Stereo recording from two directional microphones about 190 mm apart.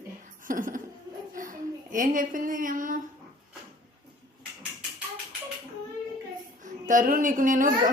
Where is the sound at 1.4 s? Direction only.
45° right (ahead or behind).